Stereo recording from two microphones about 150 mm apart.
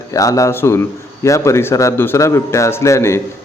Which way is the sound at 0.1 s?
20° left (ahead or behind).